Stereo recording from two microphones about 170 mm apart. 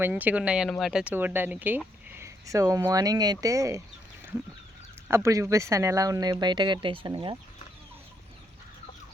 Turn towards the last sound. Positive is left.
turn(degrees=-30)  # may be behind; listen again after turning